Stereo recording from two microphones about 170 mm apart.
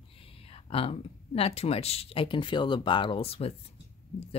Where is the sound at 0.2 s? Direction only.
35° left (ahead or behind).